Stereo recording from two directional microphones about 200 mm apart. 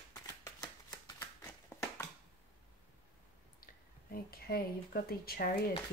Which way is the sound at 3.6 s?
45° left (ahead or behind).